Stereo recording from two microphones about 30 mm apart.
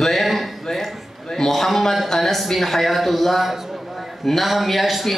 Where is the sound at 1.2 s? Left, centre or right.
Centre.